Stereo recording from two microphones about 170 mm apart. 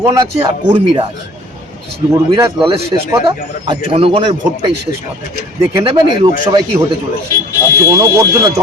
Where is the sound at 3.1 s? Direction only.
30° right (ahead or behind).